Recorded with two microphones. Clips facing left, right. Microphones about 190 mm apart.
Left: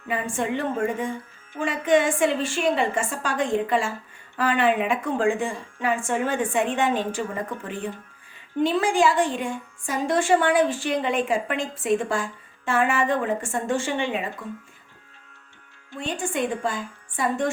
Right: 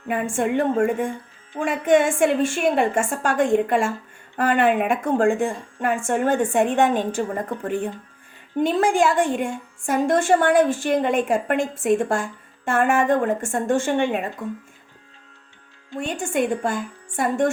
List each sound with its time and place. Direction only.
0.3 s a woman's voice: 50° right (ahead or behind)
16.0 s a woman's voice: 45° right (ahead or behind)